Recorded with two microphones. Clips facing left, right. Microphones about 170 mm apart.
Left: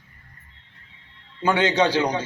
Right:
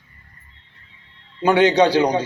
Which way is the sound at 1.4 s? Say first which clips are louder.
Right 5 dB; 15° right (ahead or behind).